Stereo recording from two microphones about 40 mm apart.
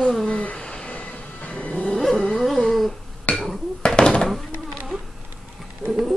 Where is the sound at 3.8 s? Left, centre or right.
Left.